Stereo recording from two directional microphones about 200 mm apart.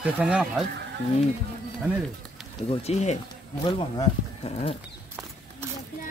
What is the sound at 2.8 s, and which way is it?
Speech, 35° left (ahead or behind).